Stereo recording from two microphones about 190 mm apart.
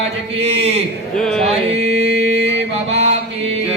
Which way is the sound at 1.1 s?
5° left (ahead or behind).